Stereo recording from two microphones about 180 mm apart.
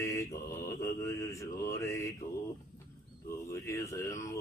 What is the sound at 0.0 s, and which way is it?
Mantra, 15° left (ahead or behind).